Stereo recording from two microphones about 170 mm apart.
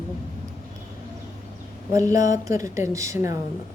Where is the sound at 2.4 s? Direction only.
20° right (ahead or behind).